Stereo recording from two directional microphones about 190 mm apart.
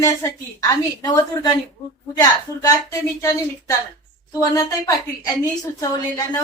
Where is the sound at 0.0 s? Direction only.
15° left (ahead or behind).